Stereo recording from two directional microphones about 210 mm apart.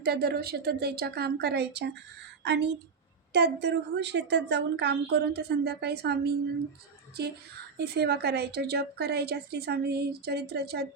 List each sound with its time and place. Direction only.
0.0 s a woman's voice: 50° right (ahead or behind)
7.8 s a woman's voice: 50° right (ahead or behind)